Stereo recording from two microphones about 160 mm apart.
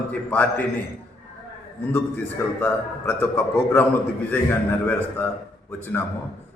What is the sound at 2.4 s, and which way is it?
A man's voice, 15° left (ahead or behind).